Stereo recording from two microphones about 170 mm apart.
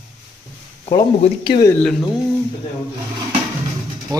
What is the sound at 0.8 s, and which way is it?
Speech, 25° left (ahead or behind).